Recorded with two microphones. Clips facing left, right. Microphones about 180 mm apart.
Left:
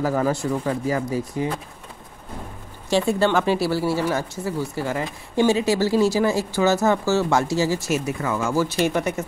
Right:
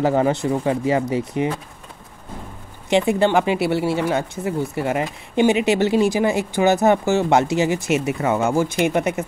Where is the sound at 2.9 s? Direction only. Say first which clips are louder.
Right 3 dB; 15° right (ahead or behind).